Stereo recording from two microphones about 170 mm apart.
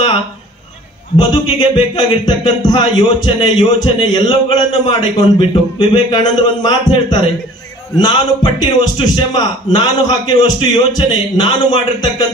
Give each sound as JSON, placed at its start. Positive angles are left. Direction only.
{"t": 1.1, "sound": "speech", "side_deg": 25}